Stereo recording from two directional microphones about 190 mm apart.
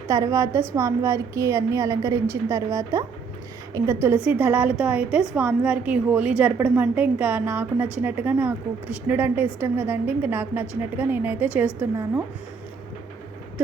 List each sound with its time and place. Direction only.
0.1 s a woman's voice: 15° right (ahead or behind)